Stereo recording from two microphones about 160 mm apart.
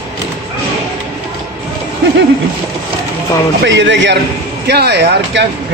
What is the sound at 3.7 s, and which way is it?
Speech, 90° right.